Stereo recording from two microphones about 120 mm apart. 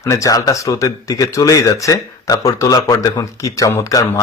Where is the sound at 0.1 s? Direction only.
30° left (ahead or behind).